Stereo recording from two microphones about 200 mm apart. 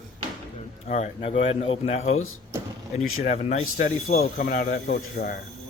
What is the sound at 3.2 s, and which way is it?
Speech, 35° left (ahead or behind).